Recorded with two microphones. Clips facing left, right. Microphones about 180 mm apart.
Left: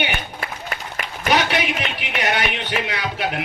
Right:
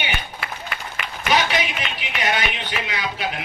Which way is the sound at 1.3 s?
65° left (ahead or behind).